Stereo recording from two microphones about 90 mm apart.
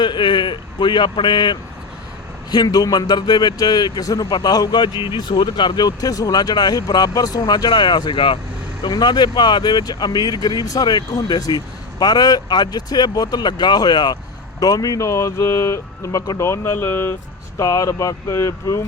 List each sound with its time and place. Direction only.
0.0 s a man's voice: 55° left (ahead or behind)
8.8 s a man's voice: 50° left (ahead or behind); by 17.2 s 30° left (ahead or behind)
17.6 s speech: 40° left (ahead or behind)